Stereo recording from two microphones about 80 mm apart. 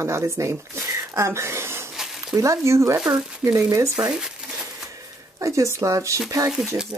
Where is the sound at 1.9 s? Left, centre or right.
Centre.